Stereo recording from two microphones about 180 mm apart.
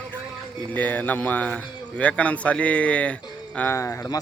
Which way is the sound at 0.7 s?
10° left (ahead or behind).